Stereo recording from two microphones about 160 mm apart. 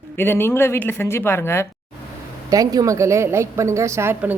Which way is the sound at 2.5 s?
20° right (ahead or behind).